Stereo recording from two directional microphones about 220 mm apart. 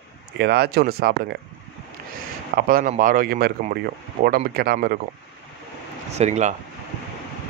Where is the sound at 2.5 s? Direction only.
40° right (ahead or behind).